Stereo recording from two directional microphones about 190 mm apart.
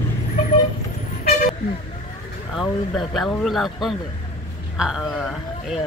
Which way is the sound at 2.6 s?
Centre (ahead or behind).